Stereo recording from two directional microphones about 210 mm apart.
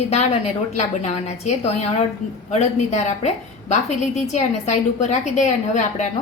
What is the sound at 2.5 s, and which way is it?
A woman's voice, 35° left (ahead or behind).